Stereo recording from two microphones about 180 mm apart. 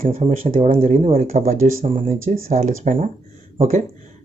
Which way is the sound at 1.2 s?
45° right (ahead or behind).